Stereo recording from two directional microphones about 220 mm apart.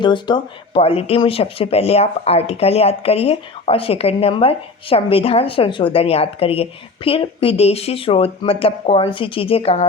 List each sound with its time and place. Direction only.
0.0 s speech: 20° left (ahead or behind)